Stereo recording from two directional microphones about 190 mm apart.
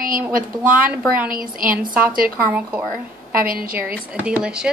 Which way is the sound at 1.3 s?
45° right (ahead or behind).